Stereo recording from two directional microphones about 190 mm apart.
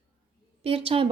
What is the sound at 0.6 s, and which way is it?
Speech, 30° right (ahead or behind).